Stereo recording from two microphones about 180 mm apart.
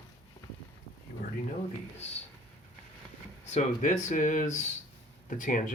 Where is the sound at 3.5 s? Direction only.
45° left (ahead or behind).